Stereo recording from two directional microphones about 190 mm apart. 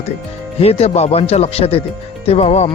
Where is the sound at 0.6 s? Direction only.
30° left (ahead or behind).